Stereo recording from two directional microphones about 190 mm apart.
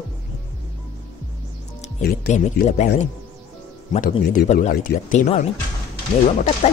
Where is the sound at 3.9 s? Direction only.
45° left (ahead or behind).